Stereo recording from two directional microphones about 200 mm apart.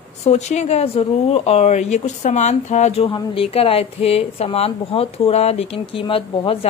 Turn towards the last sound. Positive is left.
turn(degrees=25)  # may be behind; listen again after turning